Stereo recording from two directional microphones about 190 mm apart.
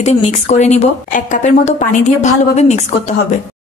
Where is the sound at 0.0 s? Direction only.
35° left (ahead or behind).